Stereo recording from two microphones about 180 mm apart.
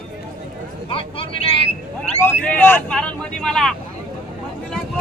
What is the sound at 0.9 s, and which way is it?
Speech, 30° left (ahead or behind).